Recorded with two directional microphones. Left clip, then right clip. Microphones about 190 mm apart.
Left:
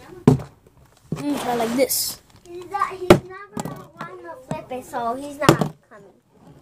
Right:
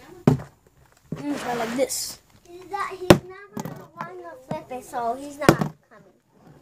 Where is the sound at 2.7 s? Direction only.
50° right (ahead or behind).